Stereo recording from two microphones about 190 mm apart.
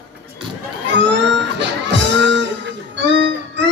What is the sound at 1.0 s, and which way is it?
A man's voice, 70° right (ahead or behind).